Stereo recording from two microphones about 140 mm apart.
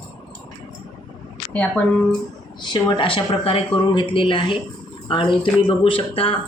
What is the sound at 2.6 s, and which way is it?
Speech, 35° left (ahead or behind).